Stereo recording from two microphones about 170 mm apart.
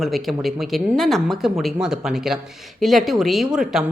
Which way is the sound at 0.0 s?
Centre (ahead or behind).